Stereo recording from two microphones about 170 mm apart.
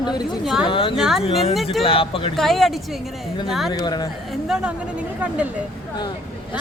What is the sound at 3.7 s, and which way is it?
Speech, 20° left (ahead or behind).